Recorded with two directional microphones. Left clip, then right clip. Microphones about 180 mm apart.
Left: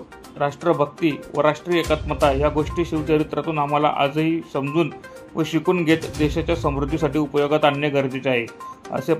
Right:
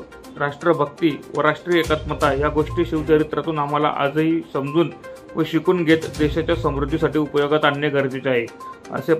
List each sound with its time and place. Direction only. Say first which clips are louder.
0.4 s speech: right 1 dB; 15° left (ahead or behind)